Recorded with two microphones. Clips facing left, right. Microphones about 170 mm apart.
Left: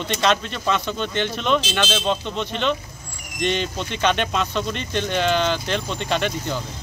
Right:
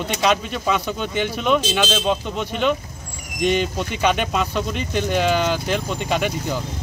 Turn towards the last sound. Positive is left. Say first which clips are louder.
# right 1 dB
turn(degrees=-5)  # may be behind; listen again after turning